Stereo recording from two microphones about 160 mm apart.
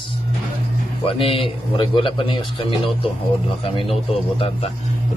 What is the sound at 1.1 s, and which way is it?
A man's voice, 35° left (ahead or behind).